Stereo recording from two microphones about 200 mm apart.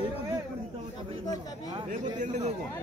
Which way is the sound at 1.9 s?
40° right (ahead or behind).